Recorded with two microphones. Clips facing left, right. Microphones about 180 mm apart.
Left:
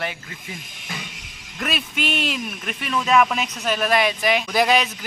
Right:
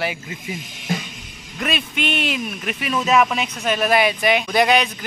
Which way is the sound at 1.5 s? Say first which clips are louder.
Right 2 dB; centre (ahead or behind).